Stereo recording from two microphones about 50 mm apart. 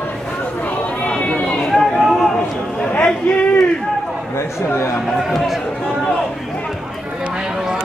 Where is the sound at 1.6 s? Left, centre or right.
Centre.